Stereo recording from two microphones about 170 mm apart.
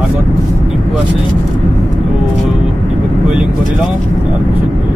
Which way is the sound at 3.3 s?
5° right (ahead or behind).